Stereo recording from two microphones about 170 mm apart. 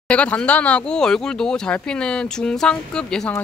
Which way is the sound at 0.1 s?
5° left (ahead or behind).